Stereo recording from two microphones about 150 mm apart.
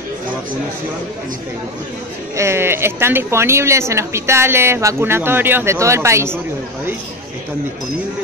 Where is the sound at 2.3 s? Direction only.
20° right (ahead or behind).